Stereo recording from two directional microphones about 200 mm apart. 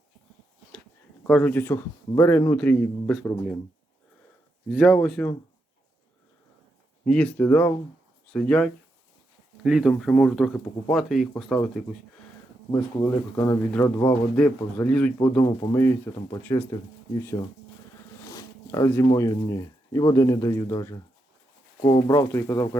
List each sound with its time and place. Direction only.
1.3 s a man's voice: 10° left (ahead or behind)
4.7 s a man's voice: centre (ahead or behind)
7.1 s a man's voice: 5° left (ahead or behind)
13.1 s a man's voice: 15° left (ahead or behind)
15.4 s speech: 25° left (ahead or behind)
15.7 s a man's voice: 10° left (ahead or behind)
18.3 s zipper: 15° left (ahead or behind)
19.0 s a man's voice: 15° left (ahead or behind)